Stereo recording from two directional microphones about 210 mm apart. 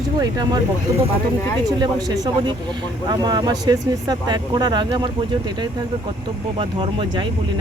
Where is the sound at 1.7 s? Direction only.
20° right (ahead or behind).